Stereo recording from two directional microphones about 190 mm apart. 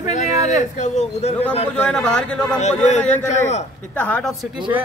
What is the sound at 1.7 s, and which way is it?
Speech, 5° left (ahead or behind).